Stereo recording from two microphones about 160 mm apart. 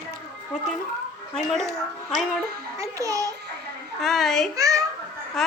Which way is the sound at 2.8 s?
20° right (ahead or behind).